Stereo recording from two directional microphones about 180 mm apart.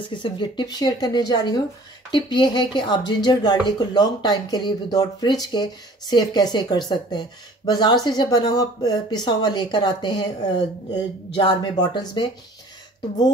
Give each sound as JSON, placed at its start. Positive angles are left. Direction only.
{"t": 0.0, "sound": "speech", "side_deg": 25}